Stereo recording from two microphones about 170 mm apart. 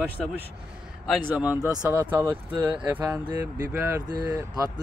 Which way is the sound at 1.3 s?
5° right (ahead or behind).